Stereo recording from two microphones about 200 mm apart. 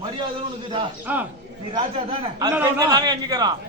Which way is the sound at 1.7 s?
25° right (ahead or behind).